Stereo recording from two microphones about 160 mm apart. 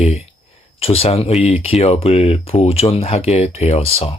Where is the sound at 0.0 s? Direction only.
40° left (ahead or behind).